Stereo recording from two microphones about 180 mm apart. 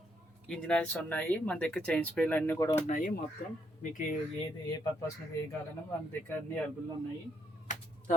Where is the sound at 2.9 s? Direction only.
45° left (ahead or behind).